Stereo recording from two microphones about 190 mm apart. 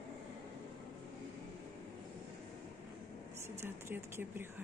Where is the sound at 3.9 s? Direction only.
10° right (ahead or behind).